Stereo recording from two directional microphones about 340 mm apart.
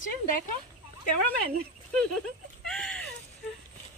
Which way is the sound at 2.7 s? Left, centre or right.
Centre.